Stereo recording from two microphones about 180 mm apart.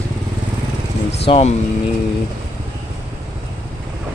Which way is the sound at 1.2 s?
35° left (ahead or behind).